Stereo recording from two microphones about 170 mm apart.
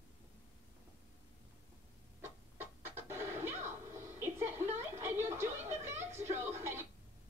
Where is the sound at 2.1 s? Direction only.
15° right (ahead or behind).